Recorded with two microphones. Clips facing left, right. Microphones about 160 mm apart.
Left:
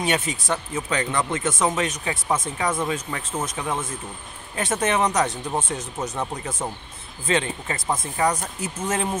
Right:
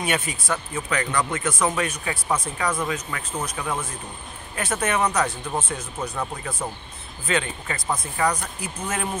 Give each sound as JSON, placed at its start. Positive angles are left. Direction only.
{"t": 0.0, "sound": "speech", "side_deg": 25}